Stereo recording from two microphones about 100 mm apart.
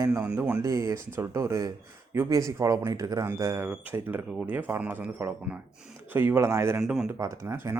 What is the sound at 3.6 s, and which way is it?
Speech, 20° right (ahead or behind).